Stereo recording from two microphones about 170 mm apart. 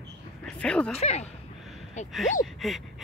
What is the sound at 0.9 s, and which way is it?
Speech, 40° left (ahead or behind).